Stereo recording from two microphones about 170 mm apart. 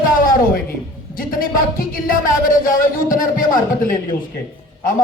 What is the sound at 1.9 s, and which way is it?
Speech, 55° left (ahead or behind).